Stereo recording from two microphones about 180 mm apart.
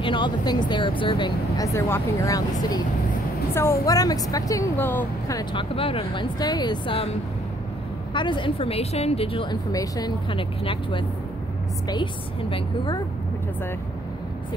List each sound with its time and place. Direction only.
0.0 s a woman's voice: 25° left (ahead or behind)
1.7 s a woman's voice: 15° left (ahead or behind)
5.4 s a woman's voice: 25° left (ahead or behind)
8.1 s a woman's voice: 25° left (ahead or behind)